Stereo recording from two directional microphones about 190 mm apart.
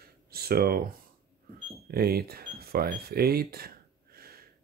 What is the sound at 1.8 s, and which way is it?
Cash register, 55° right (ahead or behind).